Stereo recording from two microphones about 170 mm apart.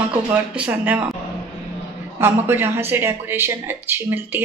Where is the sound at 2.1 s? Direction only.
15° right (ahead or behind).